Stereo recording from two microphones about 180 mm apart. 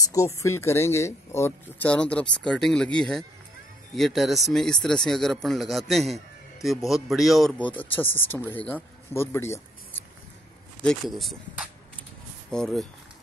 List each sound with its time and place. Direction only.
0.1 s speech: 15° left (ahead or behind)
10.8 s speech: centre (ahead or behind)